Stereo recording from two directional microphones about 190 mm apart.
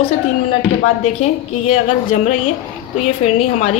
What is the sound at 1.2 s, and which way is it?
Speech, 35° left (ahead or behind).